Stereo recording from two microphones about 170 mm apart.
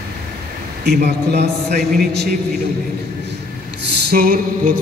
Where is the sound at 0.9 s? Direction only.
75° right (ahead or behind).